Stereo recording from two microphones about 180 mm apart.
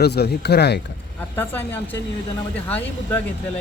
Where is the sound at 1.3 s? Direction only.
10° left (ahead or behind).